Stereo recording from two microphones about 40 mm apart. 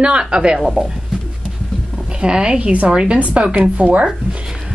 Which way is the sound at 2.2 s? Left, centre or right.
Right.